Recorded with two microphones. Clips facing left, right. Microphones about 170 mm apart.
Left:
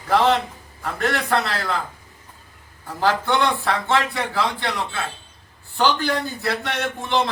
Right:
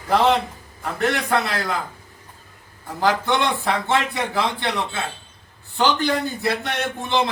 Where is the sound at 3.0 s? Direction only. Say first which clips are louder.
Even; 15° right (ahead or behind).